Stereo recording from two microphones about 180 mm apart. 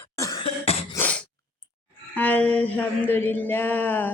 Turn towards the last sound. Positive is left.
turn(degrees=10)  # may be behind; listen again after turning